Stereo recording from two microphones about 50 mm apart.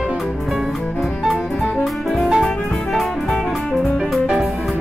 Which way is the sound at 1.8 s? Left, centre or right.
Centre.